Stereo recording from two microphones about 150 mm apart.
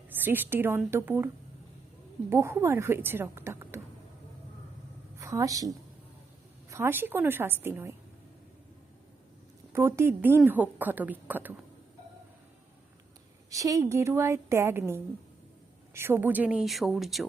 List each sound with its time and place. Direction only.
0.1 s a woman's voice: 15° right (ahead or behind)
2.3 s a woman's voice: 20° right (ahead or behind)
5.2 s a woman's voice: 20° right (ahead or behind)
9.7 s a woman's voice: 15° right (ahead or behind)
13.5 s a woman's voice: 20° right (ahead or behind); by 17.2 s centre (ahead or behind)